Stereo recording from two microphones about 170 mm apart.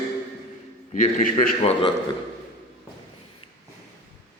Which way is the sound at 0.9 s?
50° left (ahead or behind).